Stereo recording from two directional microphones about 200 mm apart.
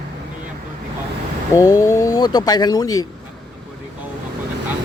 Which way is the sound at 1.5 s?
15° left (ahead or behind).